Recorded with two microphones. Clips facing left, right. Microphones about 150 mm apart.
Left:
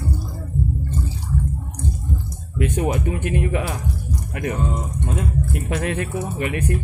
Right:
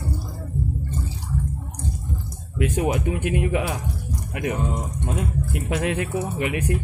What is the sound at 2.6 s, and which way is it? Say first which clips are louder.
Speech: left 1 dB; 10° right (ahead or behind).